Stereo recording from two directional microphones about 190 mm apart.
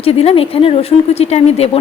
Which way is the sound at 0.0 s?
30° left (ahead or behind).